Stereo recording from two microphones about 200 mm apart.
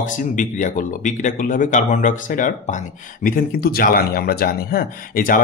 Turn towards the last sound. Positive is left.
turn(degrees=45)  # may be behind; listen again after turning